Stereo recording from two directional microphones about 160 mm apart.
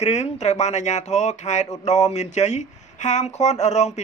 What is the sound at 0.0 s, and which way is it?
Speech, 45° left (ahead or behind).